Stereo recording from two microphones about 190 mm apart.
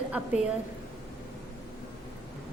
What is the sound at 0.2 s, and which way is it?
Speech, 10° right (ahead or behind).